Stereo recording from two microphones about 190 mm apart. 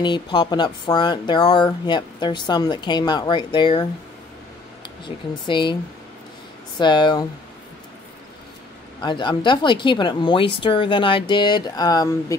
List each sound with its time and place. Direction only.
0.0 s speech: 25° left (ahead or behind)
4.8 s speech: 25° left (ahead or behind)
6.8 s speech: 25° left (ahead or behind)
9.0 s speech: 25° left (ahead or behind)